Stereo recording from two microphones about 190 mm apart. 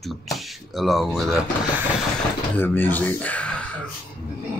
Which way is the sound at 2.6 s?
10° left (ahead or behind).